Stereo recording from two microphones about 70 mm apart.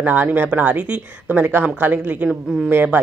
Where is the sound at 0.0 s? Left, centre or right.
Right.